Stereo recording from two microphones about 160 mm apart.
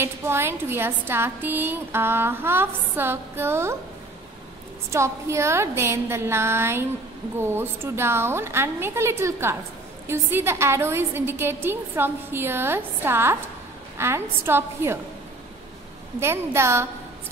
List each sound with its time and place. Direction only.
0.0 s a woman's voice: 15° right (ahead or behind)
4.9 s a woman's voice: 15° right (ahead or behind)
16.2 s a woman's voice: 15° right (ahead or behind)